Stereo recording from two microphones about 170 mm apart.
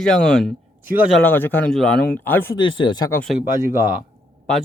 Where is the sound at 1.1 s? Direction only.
10° left (ahead or behind).